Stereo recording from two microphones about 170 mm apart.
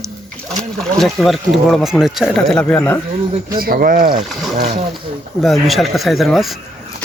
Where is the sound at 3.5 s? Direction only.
60° right (ahead or behind).